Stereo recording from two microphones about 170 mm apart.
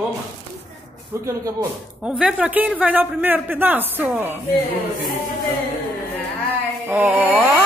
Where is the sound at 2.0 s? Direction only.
5° right (ahead or behind).